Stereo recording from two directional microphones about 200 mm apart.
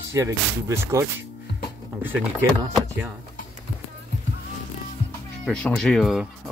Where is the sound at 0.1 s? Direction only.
15° right (ahead or behind).